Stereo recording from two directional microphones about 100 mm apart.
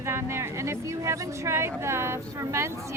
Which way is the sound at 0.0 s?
25° right (ahead or behind).